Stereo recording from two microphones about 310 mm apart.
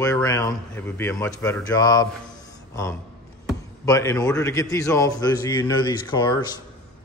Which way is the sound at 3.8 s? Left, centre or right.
Centre.